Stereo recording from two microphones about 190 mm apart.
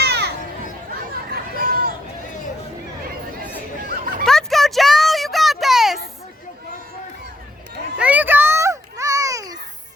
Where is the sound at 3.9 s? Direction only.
50° right (ahead or behind).